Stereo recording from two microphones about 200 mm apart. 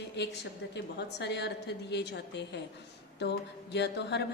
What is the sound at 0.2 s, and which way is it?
A woman's voice, 60° left (ahead or behind).